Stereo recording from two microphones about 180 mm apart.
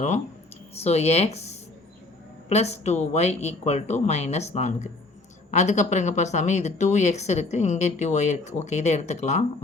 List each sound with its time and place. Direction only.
0.8 s speech: 35° left (ahead or behind)